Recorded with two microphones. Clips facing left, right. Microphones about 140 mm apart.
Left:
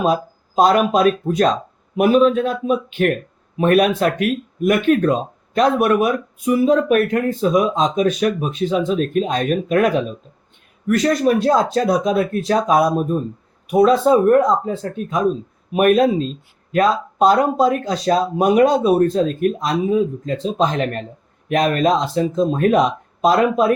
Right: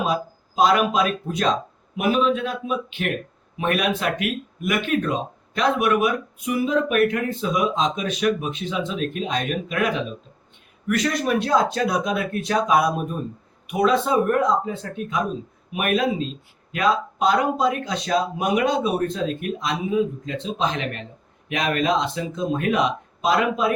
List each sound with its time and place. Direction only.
0.0 s speech: 40° left (ahead or behind)